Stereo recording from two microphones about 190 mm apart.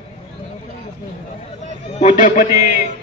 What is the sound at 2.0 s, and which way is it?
Speech, 45° left (ahead or behind).